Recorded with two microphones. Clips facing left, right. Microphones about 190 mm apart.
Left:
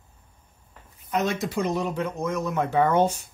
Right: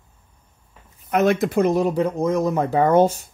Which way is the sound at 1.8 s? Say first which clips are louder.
Right 7 dB; 35° right (ahead or behind).